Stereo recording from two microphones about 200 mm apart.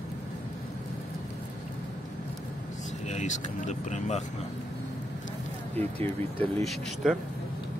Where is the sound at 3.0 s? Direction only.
35° left (ahead or behind).